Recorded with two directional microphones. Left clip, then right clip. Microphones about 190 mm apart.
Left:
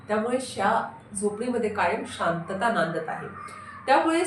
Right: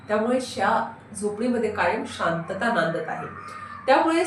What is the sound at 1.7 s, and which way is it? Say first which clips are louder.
Speech: right 2 dB; 20° left (ahead or behind).